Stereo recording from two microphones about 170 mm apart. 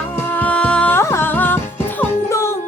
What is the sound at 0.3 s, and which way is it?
Music, 10° left (ahead or behind).